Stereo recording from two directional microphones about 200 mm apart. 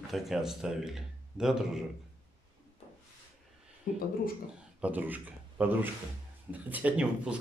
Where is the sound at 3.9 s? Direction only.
45° left (ahead or behind).